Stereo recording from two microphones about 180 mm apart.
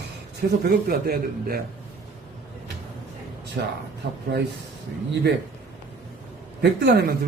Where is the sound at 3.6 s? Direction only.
60° right (ahead or behind).